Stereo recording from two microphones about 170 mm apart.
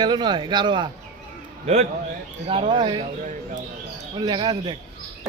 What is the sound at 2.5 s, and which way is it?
Speech, 30° right (ahead or behind).